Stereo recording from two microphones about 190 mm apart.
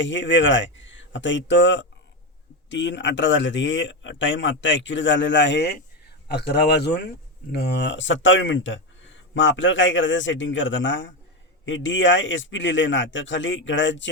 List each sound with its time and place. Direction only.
0.0 s speech: 75° left (ahead or behind)